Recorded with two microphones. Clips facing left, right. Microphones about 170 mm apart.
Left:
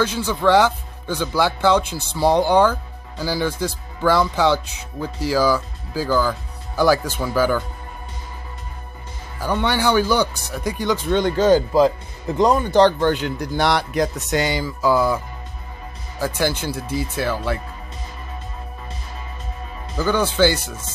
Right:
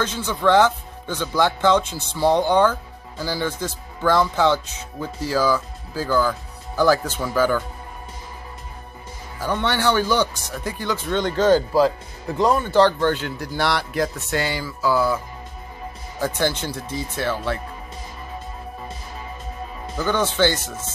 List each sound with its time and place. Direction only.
0.0 s speech: 10° left (ahead or behind)
9.4 s speech: 10° left (ahead or behind)
16.2 s speech: 10° left (ahead or behind)
20.0 s speech: 10° left (ahead or behind)